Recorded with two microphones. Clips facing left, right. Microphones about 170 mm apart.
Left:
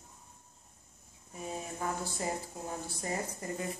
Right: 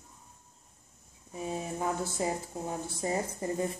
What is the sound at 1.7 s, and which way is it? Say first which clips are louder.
A woman's voice: right 4 dB; 25° right (ahead or behind).